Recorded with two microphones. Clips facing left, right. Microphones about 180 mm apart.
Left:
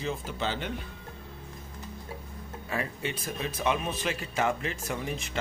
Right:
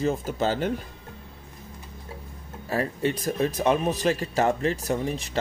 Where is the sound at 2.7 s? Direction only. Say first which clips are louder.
Right 8 dB; 40° right (ahead or behind).